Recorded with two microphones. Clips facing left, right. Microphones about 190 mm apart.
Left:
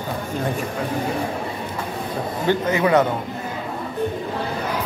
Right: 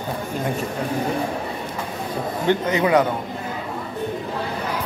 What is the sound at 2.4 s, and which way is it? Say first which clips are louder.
Speech: even; 20° right (ahead or behind).